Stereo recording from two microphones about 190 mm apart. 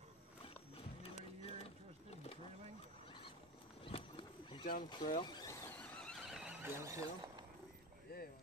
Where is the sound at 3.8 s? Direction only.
25° left (ahead or behind).